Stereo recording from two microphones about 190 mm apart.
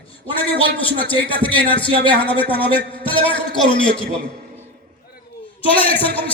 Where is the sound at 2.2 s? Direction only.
25° left (ahead or behind).